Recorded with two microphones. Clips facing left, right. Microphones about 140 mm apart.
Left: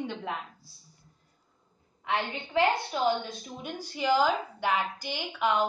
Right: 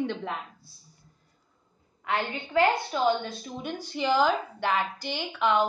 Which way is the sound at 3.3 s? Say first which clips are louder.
Right 4 dB; 15° left (ahead or behind).